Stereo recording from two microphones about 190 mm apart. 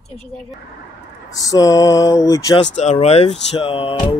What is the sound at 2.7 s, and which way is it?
Speech, 35° left (ahead or behind).